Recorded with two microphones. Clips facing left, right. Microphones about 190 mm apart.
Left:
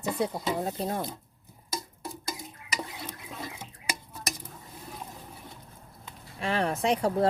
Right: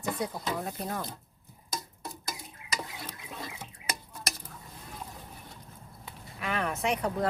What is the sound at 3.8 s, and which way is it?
Tick-tock, 30° left (ahead or behind).